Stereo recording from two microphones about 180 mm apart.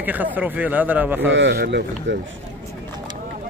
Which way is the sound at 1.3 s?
70° right (ahead or behind).